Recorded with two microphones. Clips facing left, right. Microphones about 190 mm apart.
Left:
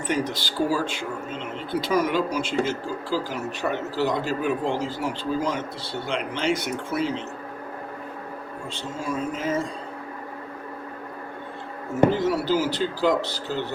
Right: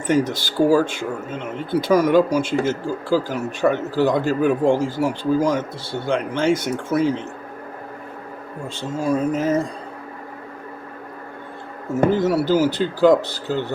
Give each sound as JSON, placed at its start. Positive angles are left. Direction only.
{"t": 0.1, "sound": "speech", "side_deg": -50}
{"t": 8.7, "sound": "speech", "side_deg": -40}
{"t": 12.1, "sound": "speech", "side_deg": -50}